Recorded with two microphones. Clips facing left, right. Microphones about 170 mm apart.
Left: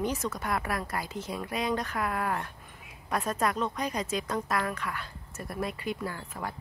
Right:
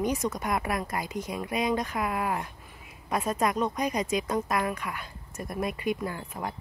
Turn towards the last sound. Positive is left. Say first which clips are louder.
# right 2 dB
turn(degrees=-15)  # may be behind; listen again after turning